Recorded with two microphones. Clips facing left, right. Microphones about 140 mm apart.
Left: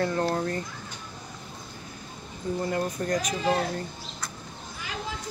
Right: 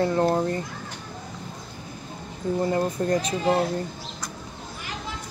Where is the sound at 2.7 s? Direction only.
30° right (ahead or behind).